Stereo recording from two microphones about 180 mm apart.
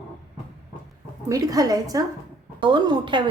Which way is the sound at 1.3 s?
20° right (ahead or behind).